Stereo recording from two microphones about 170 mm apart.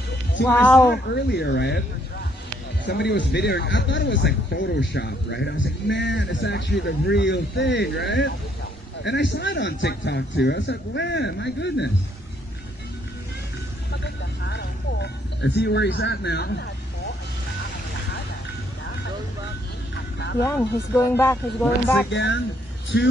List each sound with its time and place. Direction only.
0.5 s speech: 10° left (ahead or behind)
0.8 s speech: 75° left (ahead or behind)
2.8 s speech: 75° left (ahead or behind)
13.9 s speech: 90° left
20.4 s speech: 15° left (ahead or behind)
22.1 s speech: 90° left